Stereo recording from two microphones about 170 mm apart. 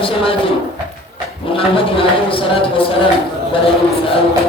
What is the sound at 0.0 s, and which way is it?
Speech, 30° left (ahead or behind).